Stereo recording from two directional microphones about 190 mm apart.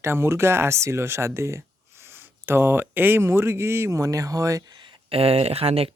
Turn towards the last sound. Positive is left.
turn(degrees=-30)  # may be behind; listen again after turning